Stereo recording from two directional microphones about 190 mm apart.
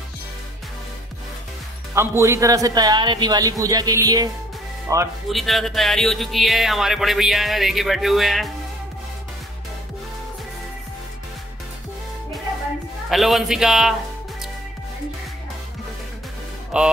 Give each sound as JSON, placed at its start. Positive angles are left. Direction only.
{"t": 2.0, "sound": "a man's voice", "side_deg": -15}
{"t": 5.3, "sound": "speech", "side_deg": 0}
{"t": 13.1, "sound": "speech", "side_deg": 0}
{"t": 16.7, "sound": "mantra", "side_deg": -5}